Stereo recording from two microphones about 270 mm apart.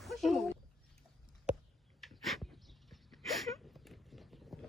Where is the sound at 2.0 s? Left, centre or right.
Centre.